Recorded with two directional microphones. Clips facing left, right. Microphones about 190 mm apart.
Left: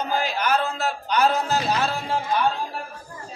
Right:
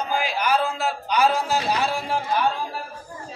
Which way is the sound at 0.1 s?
10° right (ahead or behind).